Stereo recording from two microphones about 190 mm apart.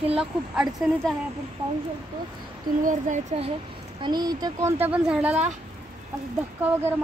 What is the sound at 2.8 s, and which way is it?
Speech, 40° right (ahead or behind).